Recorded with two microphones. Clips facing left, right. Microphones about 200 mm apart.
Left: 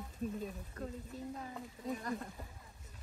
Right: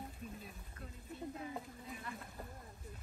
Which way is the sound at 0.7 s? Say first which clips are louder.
Left 1 dB; 40° left (ahead or behind).